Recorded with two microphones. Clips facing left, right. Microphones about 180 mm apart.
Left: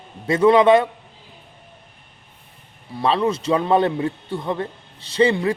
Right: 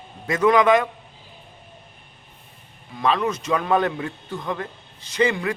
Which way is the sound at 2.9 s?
30° left (ahead or behind).